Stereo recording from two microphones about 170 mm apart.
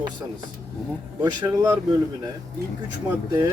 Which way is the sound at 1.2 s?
20° right (ahead or behind).